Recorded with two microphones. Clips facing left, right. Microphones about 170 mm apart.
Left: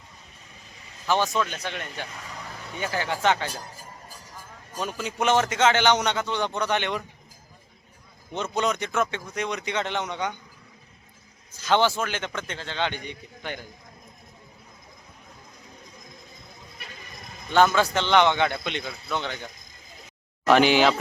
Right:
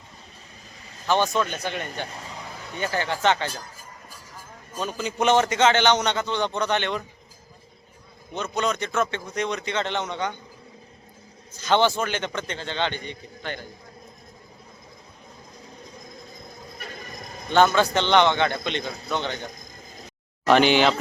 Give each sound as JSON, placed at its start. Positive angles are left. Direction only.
{"t": 1.0, "sound": "a man's voice", "side_deg": 5}
{"t": 4.8, "sound": "a man's voice", "side_deg": 5}
{"t": 8.3, "sound": "a man's voice", "side_deg": 25}
{"t": 11.6, "sound": "a man's voice", "side_deg": 5}
{"t": 16.7, "sound": "a sound", "side_deg": -45}
{"t": 17.5, "sound": "a man's voice", "side_deg": 5}
{"t": 18.9, "sound": "speech", "side_deg": -40}
{"t": 19.1, "sound": "a man's voice", "side_deg": 5}
{"t": 20.5, "sound": "a man's voice", "side_deg": 5}